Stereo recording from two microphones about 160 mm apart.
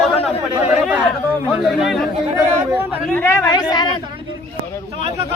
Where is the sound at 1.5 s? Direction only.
5° right (ahead or behind).